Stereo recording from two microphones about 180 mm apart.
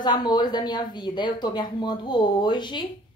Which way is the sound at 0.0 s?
25° left (ahead or behind).